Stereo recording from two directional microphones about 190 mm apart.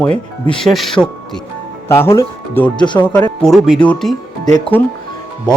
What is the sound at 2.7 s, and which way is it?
Speech, 25° left (ahead or behind).